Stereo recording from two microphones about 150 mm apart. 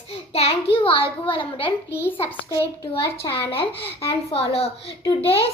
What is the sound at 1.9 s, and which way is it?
Speech, 15° left (ahead or behind).